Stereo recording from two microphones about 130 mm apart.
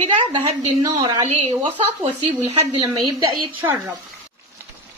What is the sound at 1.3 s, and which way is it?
Speech, 70° right (ahead or behind).